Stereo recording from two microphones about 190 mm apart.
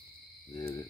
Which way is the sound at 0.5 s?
15° left (ahead or behind).